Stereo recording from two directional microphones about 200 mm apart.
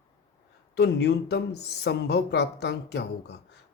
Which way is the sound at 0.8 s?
55° left (ahead or behind).